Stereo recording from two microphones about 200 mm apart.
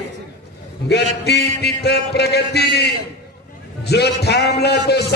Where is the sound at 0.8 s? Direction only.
55° left (ahead or behind).